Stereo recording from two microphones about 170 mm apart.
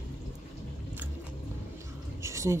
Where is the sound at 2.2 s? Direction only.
15° right (ahead or behind).